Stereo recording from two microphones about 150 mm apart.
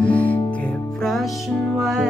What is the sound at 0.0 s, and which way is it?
Music, 10° left (ahead or behind).